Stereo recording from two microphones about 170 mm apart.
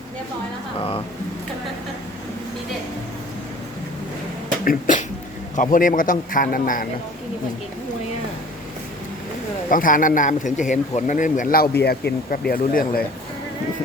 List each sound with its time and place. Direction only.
0.8 s a sound: 30° left (ahead or behind)
4.6 s speech: 50° left (ahead or behind)
9.6 s speech: 50° left (ahead or behind); by 12.4 s 70° left (ahead or behind)
12.5 s speech: 60° left (ahead or behind)